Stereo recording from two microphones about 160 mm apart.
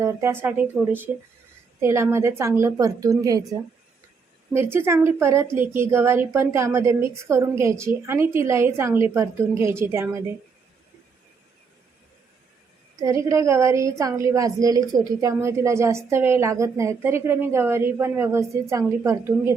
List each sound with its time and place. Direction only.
0.0 s a woman's voice: 15° right (ahead or behind)
13.0 s a woman's voice: 20° right (ahead or behind)